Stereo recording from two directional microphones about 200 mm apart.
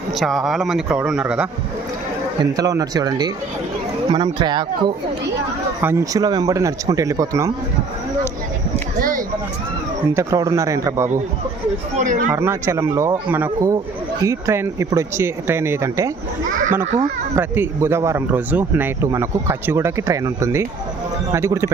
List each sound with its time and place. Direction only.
0.1 s speech: centre (ahead or behind)
2.4 s speech: 20° right (ahead or behind)
9.0 s a sound: 45° right (ahead or behind)
10.2 s speech: 15° right (ahead or behind)
11.9 s speech: 40° right (ahead or behind)
12.3 s speech: 10° right (ahead or behind)
16.5 s a child's voice: 40° right (ahead or behind)
17.3 s speech: 10° right (ahead or behind)